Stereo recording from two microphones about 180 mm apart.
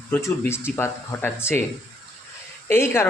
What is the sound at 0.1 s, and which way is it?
Speech, 15° left (ahead or behind).